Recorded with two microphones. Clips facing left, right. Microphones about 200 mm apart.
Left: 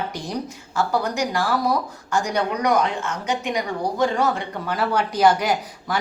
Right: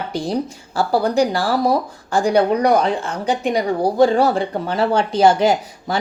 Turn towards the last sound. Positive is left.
turn(degrees=-25)  # may be behind; listen again after turning